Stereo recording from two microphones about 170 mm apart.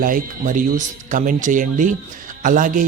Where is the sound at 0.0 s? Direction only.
55° right (ahead or behind).